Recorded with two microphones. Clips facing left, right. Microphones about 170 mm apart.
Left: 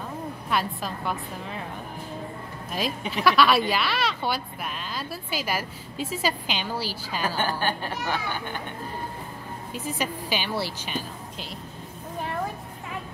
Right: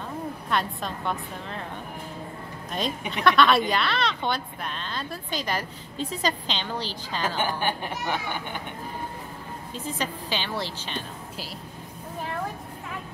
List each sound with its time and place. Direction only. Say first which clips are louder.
0.5 s a woman's voice: left 1 dB; 5° left (ahead or behind)
3.3 s a woman's voice: even; 5° left (ahead or behind)
7.3 s speech: even; 15° right (ahead or behind)
9.8 s a woman's voice: left 1 dB; 10° left (ahead or behind)